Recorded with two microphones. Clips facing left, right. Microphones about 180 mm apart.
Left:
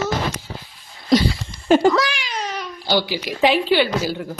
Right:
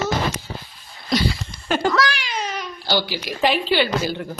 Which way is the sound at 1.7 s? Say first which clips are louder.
Left 7 dB; 25° left (ahead or behind).